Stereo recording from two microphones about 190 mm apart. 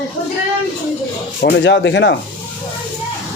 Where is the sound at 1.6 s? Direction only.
70° left (ahead or behind).